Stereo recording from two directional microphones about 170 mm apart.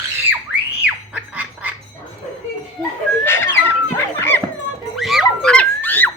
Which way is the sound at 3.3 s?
15° left (ahead or behind).